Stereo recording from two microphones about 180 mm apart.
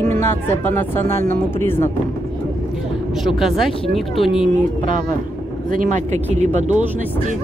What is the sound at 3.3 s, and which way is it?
Speech, centre (ahead or behind).